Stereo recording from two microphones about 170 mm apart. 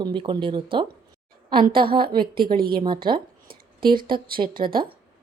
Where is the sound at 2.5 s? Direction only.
60° right (ahead or behind).